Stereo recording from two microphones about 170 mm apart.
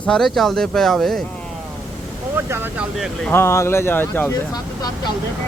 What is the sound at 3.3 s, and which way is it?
Speech, 15° left (ahead or behind).